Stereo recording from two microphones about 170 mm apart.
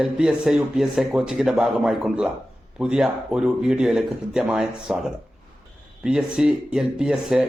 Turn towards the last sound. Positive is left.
turn(degrees=-5)  # may be behind; listen again after turning